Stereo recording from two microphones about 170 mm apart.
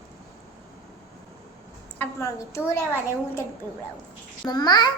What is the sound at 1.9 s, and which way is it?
A child's voice, 15° left (ahead or behind).